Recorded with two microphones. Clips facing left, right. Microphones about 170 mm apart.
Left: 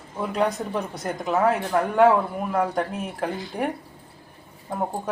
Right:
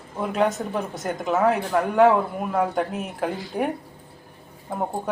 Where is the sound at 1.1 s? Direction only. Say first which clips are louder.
Right 1 dB; centre (ahead or behind).